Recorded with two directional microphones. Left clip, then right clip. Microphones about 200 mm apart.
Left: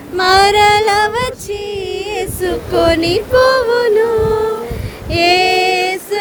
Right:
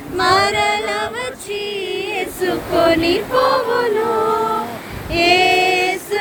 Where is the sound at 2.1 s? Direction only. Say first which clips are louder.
Left 2 dB; 35° left (ahead or behind).